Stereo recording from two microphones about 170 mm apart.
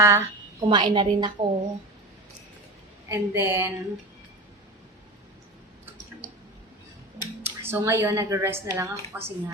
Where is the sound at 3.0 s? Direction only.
15° right (ahead or behind).